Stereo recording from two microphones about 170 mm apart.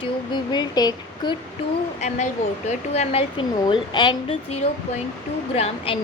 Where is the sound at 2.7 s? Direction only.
40° left (ahead or behind).